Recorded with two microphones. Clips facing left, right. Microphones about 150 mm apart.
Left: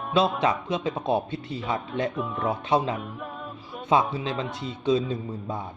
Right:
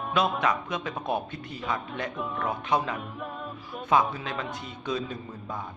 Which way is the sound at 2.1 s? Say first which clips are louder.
Left 3 dB; centre (ahead or behind).